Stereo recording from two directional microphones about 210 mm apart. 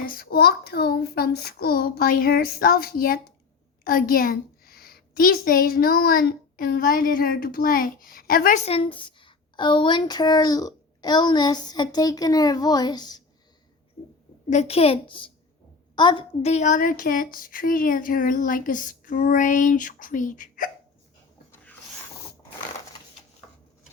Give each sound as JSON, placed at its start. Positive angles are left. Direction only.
{"t": 0.0, "sound": "child singing", "side_deg": 45}
{"t": 3.8, "sound": "a child's voice", "side_deg": 45}
{"t": 14.5, "sound": "a child's voice", "side_deg": 30}
{"t": 21.5, "sound": "a sound", "side_deg": 5}